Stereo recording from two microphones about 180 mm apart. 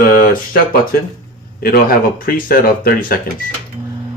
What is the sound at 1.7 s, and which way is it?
Speech, 55° left (ahead or behind).